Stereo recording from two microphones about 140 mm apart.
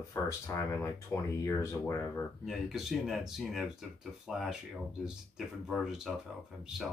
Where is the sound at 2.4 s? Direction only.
Centre (ahead or behind).